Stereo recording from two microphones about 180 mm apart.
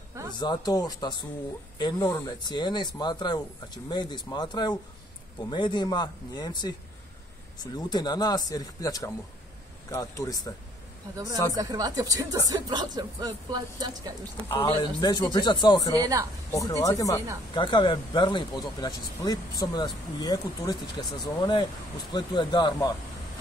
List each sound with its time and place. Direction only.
0.4 s speech: 20° left (ahead or behind)
11.5 s speech: 20° right (ahead or behind)
14.5 s speech: 20° left (ahead or behind)
15.9 s speech: 20° right (ahead or behind)
16.5 s speech: 20° left (ahead or behind)